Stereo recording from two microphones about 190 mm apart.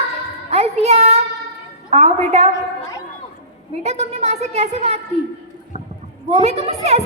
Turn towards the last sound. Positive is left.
turn(degrees=-35)  # may be behind; listen again after turning